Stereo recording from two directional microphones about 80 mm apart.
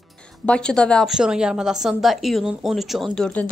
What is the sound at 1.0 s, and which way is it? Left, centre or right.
A woman's voice, centre.